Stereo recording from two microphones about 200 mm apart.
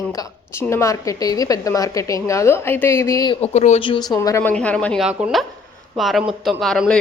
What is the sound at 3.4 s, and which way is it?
Speech, 35° left (ahead or behind).